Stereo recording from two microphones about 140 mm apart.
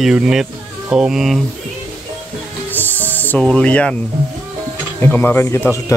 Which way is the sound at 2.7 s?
10° left (ahead or behind).